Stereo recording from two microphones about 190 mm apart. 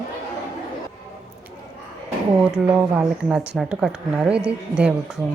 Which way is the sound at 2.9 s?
10° right (ahead or behind).